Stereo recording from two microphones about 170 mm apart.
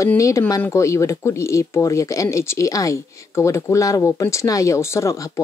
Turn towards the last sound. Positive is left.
turn(degrees=20)  # may be behind; listen again after turning